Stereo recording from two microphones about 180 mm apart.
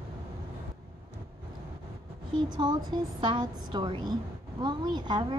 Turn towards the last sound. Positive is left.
turn(degrees=-25)  # may be behind; listen again after turning